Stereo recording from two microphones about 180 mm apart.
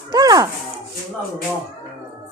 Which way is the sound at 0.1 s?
20° right (ahead or behind).